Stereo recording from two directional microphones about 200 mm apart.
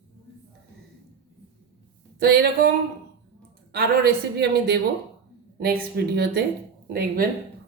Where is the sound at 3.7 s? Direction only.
50° right (ahead or behind).